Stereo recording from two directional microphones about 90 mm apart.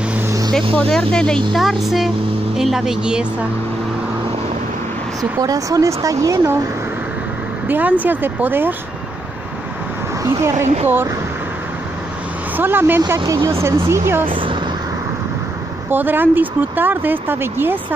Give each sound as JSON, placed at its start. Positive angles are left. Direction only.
{"t": 0.7, "sound": "speech", "side_deg": 10}
{"t": 5.4, "sound": "speech", "side_deg": -40}
{"t": 7.6, "sound": "speech", "side_deg": -20}
{"t": 10.2, "sound": "speech", "side_deg": -30}
{"t": 12.5, "sound": "speech", "side_deg": -20}
{"t": 14.2, "sound": "speech", "side_deg": -70}
{"t": 15.9, "sound": "speech", "side_deg": -20}